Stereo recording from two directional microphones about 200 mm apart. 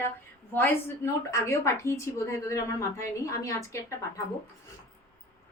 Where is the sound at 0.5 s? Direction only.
10° left (ahead or behind).